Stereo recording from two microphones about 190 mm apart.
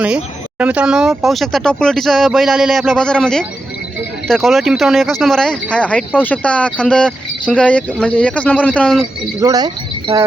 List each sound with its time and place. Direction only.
0.6 s speech: 5° right (ahead or behind)
9.4 s speech: 20° right (ahead or behind)